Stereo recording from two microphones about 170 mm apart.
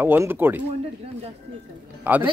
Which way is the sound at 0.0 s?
10° right (ahead or behind).